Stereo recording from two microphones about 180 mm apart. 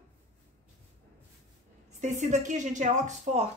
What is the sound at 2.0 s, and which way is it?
Speech, 40° right (ahead or behind).